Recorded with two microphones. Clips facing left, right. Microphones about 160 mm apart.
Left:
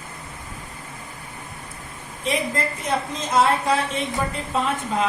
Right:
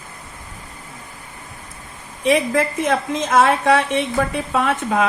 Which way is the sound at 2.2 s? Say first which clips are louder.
Right 7 dB; 80° right.